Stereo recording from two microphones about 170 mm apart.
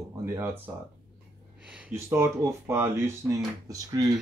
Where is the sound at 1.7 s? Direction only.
5° right (ahead or behind).